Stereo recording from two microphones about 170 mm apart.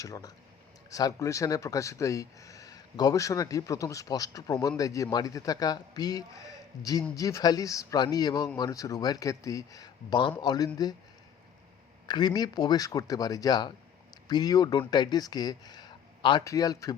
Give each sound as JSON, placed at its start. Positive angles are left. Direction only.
{"t": 0.0, "sound": "speech", "side_deg": 20}
{"t": 12.0, "sound": "speech", "side_deg": 25}